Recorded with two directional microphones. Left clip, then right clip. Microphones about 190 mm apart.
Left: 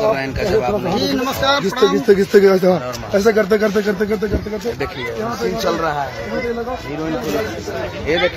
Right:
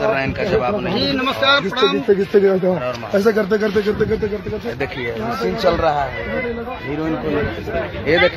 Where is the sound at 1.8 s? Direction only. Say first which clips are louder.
Left 3 dB; 20° left (ahead or behind).